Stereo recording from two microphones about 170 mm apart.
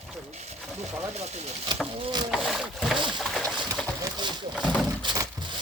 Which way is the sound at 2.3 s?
Centre (ahead or behind).